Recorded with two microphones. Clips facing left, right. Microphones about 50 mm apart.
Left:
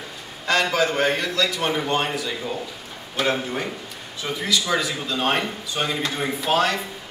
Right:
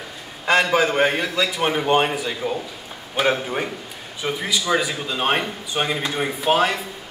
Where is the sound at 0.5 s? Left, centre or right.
Centre.